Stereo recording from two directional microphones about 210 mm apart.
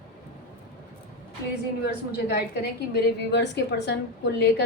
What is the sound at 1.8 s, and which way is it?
A woman's voice, 50° left (ahead or behind).